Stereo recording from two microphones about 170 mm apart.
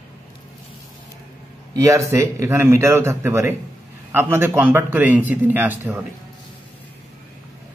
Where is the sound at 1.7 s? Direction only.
20° right (ahead or behind).